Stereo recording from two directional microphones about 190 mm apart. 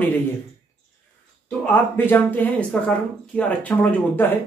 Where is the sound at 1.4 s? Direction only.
10° left (ahead or behind).